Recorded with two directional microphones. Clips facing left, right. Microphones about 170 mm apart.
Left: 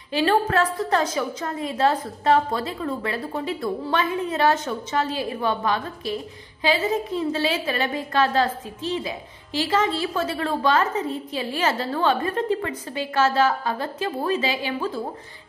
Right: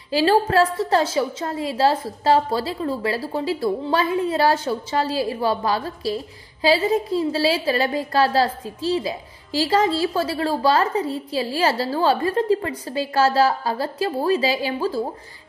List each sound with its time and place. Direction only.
0.1 s a woman's voice: 30° right (ahead or behind)